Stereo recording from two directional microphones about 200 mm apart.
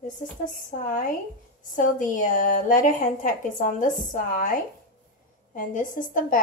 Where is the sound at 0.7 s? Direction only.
40° left (ahead or behind).